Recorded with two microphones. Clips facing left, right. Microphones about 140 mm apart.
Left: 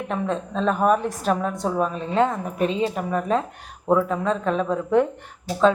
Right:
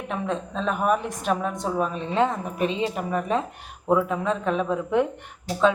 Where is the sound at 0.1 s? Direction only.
Centre (ahead or behind).